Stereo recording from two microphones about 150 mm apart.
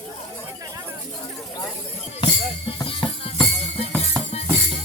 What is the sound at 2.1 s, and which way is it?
Music, 40° left (ahead or behind).